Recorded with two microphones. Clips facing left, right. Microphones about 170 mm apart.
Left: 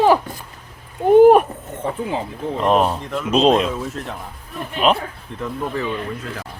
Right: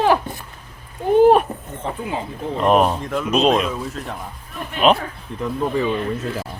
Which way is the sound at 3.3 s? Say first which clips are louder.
Left 2 dB; 30° left (ahead or behind).